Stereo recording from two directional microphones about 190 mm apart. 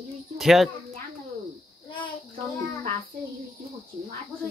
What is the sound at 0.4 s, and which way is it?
Speech, centre (ahead or behind).